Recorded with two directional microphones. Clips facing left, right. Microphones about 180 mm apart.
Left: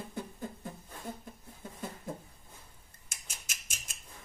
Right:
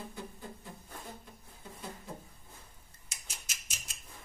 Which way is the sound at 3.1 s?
50° left (ahead or behind).